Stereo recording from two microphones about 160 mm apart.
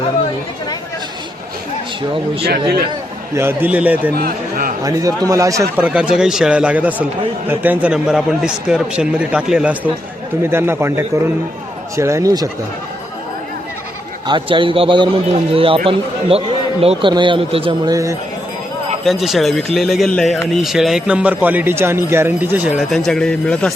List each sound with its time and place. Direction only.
3.3 s speech: 10° right (ahead or behind)
4.2 s a sound: 60° right (ahead or behind)
4.8 s speech: 20° right (ahead or behind)
5.7 s speech: 10° right (ahead or behind)
14.3 s a man's voice: 30° right (ahead or behind)
17.9 s speech: 20° right (ahead or behind)
19.0 s speech: centre (ahead or behind)
22.8 s speech: centre (ahead or behind)